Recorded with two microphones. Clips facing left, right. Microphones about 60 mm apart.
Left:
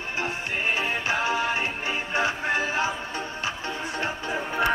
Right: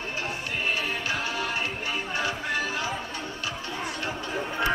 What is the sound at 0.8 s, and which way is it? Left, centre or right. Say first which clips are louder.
Music: left 4 dB; left.